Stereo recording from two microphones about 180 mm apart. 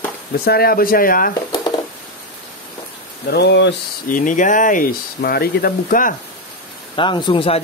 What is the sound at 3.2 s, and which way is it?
Speech, 65° left (ahead or behind).